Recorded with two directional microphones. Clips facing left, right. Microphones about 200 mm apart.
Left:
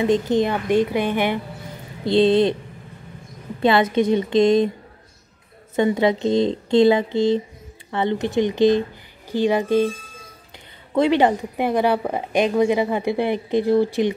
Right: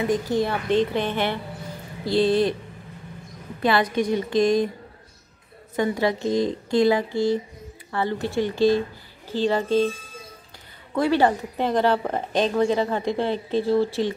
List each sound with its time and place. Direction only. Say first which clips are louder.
0.0 s speech: left 4 dB; 20° left (ahead or behind)
3.6 s speech: left 4 dB; 25° left (ahead or behind)
5.8 s speech: left 4 dB; 20° left (ahead or behind)
11.0 s speech: left 3 dB; 20° left (ahead or behind)